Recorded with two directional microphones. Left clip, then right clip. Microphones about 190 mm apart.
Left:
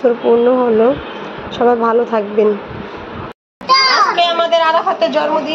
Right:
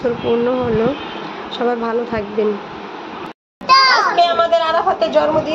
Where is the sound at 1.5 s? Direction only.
10° left (ahead or behind).